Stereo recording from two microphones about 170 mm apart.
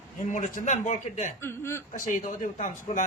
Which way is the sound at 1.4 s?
15° left (ahead or behind).